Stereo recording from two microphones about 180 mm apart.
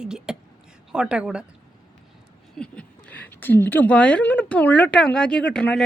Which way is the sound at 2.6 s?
5° left (ahead or behind).